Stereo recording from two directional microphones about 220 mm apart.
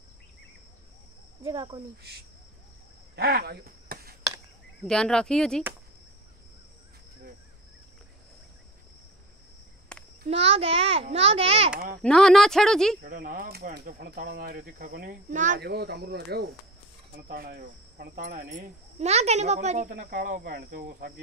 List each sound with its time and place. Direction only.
1.4 s a child's voice: 20° right (ahead or behind)
3.2 s a sound: 45° right (ahead or behind)
4.8 s speech: 5° left (ahead or behind)
9.9 s a sound: 5° left (ahead or behind)
10.2 s a child's voice: 30° right (ahead or behind)
12.0 s speech: 5° left (ahead or behind)
13.0 s speech: 40° right (ahead or behind)
15.6 s cricket: 45° right (ahead or behind)
18.9 s speech: 30° right (ahead or behind)